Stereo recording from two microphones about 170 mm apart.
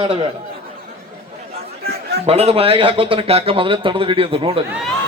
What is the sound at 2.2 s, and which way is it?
Speech, 35° right (ahead or behind).